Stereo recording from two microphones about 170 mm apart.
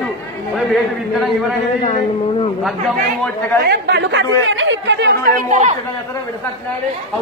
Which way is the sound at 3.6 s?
70° right (ahead or behind).